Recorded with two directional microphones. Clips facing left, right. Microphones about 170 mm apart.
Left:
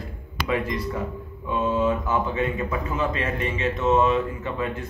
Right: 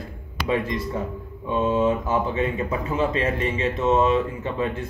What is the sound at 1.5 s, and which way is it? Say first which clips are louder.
Speech: right 2 dB; 30° right (ahead or behind).